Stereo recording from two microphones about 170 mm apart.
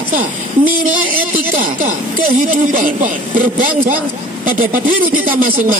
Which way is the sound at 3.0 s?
50° right (ahead or behind).